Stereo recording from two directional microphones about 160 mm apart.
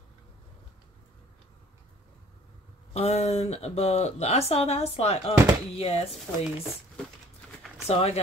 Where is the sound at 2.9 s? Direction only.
45° left (ahead or behind).